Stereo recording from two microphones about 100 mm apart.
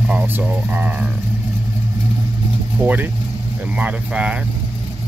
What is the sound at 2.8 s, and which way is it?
Speech, 15° right (ahead or behind).